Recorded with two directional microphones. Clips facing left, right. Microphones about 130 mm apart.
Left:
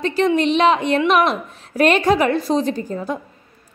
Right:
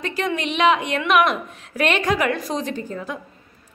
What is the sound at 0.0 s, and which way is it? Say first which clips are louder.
A woman's voice: left 7 dB; 30° left (ahead or behind).